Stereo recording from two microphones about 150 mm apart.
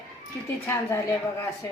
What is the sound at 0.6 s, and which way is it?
Speech, 15° left (ahead or behind).